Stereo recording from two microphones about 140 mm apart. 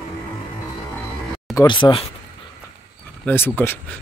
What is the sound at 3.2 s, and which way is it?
Speech, 15° left (ahead or behind).